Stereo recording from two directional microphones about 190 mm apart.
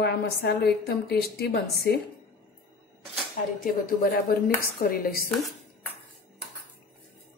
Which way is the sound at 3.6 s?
50° left (ahead or behind).